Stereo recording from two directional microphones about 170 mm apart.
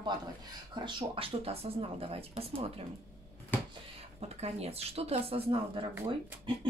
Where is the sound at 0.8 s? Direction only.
30° right (ahead or behind).